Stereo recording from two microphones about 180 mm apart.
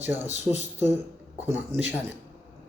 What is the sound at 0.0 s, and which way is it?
Speech, 10° right (ahead or behind).